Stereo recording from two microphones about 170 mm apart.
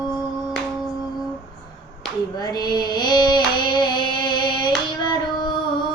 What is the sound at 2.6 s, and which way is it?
Singing, 25° left (ahead or behind).